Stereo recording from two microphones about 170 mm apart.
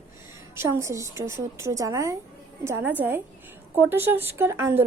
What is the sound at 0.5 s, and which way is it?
Speech, 15° right (ahead or behind).